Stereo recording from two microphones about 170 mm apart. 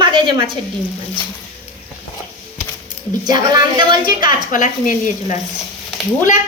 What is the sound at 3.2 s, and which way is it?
A woman's voice, 25° right (ahead or behind).